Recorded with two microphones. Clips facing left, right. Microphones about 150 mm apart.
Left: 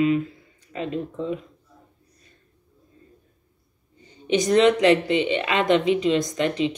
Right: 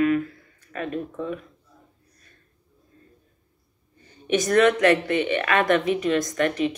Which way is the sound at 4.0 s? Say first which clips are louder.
Left 1 dB; 15° left (ahead or behind).